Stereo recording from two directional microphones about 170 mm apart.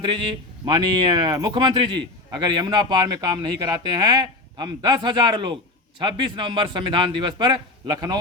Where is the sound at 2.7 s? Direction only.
25° right (ahead or behind).